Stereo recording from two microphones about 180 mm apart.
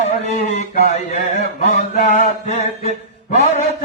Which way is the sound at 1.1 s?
40° left (ahead or behind).